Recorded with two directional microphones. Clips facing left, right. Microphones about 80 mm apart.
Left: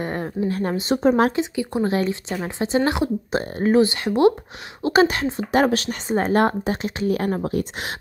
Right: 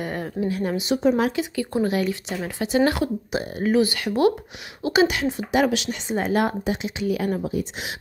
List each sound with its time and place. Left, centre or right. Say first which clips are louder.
0.0 s speech: left 2 dB; left
1.3 s a woman's voice: left 1 dB; left
1.9 s a woman's voice: left 2 dB; left
7.4 s speech: left 2 dB; left